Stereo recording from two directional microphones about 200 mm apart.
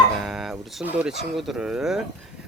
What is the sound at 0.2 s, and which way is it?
Dog, centre (ahead or behind).